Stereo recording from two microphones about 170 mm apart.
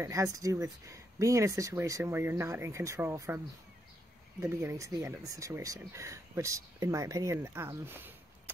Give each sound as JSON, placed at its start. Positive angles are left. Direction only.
{"t": 0.0, "sound": "speech", "side_deg": -20}
{"t": 4.4, "sound": "speech", "side_deg": -15}